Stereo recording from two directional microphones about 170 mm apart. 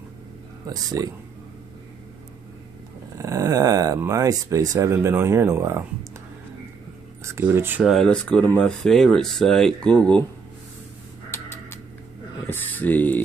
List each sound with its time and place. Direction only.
0.7 s speech: 20° right (ahead or behind)
3.2 s speech: 20° right (ahead or behind)
7.2 s speech: 15° right (ahead or behind)
7.9 s speech: 5° left (ahead or behind)
11.2 s a sound: 15° left (ahead or behind)